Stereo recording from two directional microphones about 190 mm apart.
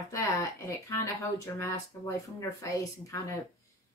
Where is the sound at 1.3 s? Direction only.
15° left (ahead or behind).